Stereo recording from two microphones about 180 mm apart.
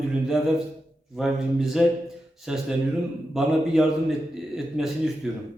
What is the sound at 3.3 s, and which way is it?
A man's voice, centre (ahead or behind).